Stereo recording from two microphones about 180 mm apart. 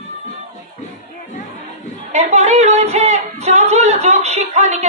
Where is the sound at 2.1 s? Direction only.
35° right (ahead or behind).